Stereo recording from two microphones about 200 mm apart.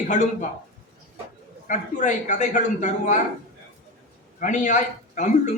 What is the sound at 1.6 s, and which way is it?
A man's voice, 40° left (ahead or behind).